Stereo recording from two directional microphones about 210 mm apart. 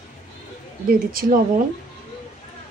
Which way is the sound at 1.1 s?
45° right (ahead or behind).